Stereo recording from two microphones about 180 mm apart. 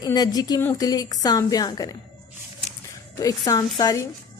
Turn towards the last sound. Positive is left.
turn(degrees=20)  # may be behind; listen again after turning